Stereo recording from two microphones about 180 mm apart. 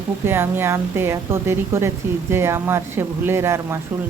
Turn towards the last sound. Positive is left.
turn(degrees=-15)  # may be behind; listen again after turning